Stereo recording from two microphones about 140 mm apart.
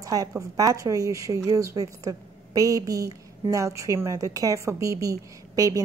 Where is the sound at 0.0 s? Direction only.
25° right (ahead or behind).